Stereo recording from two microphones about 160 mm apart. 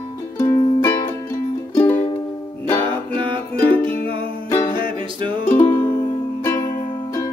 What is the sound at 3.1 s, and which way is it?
Music, 30° right (ahead or behind).